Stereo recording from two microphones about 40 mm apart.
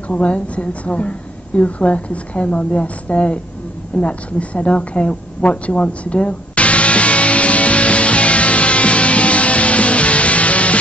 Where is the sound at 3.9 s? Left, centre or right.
Left.